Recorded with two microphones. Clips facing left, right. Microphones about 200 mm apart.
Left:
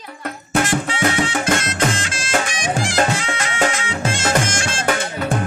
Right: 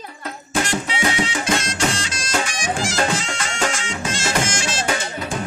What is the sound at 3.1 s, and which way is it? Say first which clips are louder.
Music: left 2 dB; 60° left (ahead or behind).